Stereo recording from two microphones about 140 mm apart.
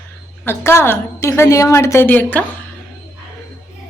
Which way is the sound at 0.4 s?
20° left (ahead or behind).